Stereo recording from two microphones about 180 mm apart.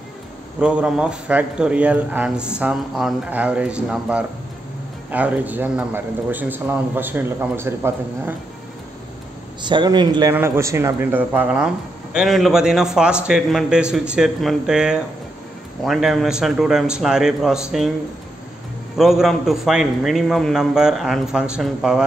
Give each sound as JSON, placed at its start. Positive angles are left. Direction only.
{"t": 0.6, "sound": "a man's voice", "side_deg": -5}
{"t": 9.6, "sound": "a man's voice", "side_deg": -25}
{"t": 18.9, "sound": "a man's voice", "side_deg": 0}